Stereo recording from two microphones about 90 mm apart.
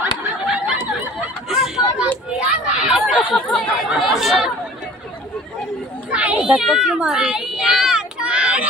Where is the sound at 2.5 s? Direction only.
10° right (ahead or behind).